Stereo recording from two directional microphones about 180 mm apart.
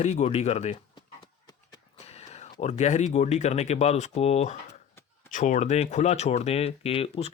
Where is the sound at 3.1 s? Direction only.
40° left (ahead or behind).